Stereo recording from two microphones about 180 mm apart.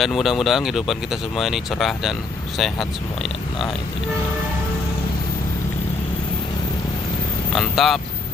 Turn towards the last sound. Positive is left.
turn(degrees=0)  # may be behind; listen again after turning